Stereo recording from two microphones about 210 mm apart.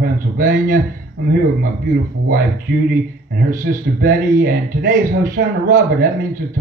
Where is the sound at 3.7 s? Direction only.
40° right (ahead or behind).